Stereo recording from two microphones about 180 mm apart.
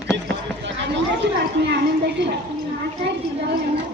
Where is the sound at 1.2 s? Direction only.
75° right (ahead or behind).